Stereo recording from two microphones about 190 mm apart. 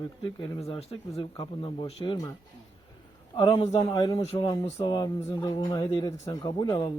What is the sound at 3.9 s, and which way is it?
Speech, 20° left (ahead or behind).